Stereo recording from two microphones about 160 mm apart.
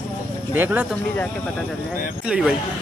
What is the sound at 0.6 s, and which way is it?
Speech, 10° right (ahead or behind).